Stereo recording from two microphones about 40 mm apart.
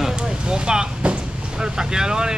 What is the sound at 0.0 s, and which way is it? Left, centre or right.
Vehicle, centre.